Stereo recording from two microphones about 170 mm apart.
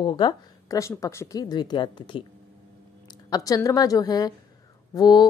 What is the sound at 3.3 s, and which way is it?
A woman's voice, 20° left (ahead or behind).